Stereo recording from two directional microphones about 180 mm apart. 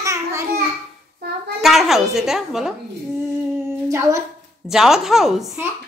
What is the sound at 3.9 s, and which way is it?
Speech, 15° right (ahead or behind).